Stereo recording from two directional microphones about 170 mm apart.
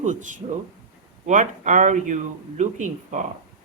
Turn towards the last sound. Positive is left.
turn(degrees=-45)  # may be behind; listen again after turning